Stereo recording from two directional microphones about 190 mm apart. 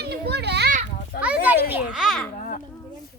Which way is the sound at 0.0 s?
60° right (ahead or behind).